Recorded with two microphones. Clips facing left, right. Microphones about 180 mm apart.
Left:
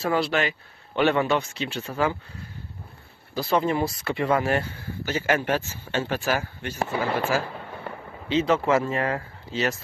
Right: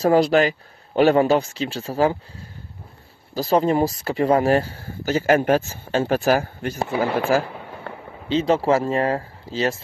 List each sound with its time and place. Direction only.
0.0 s speech: 40° right (ahead or behind)
3.3 s speech: 40° right (ahead or behind)
8.3 s speech: 30° right (ahead or behind)